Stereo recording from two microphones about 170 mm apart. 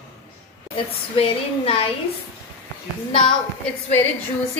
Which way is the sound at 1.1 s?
35° left (ahead or behind).